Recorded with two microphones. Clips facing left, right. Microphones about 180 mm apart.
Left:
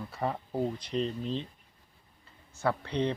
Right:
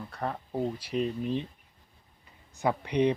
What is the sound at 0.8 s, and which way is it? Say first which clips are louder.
Speech: right 2 dB; 10° right (ahead or behind).